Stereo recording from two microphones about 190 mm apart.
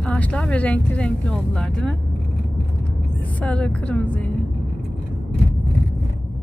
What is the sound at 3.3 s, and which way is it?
Speech, 5° left (ahead or behind).